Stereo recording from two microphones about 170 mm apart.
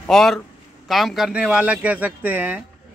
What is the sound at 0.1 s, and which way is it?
A man's voice, centre (ahead or behind).